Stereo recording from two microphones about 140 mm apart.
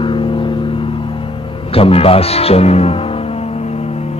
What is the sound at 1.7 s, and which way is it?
Speech, 45° left (ahead or behind).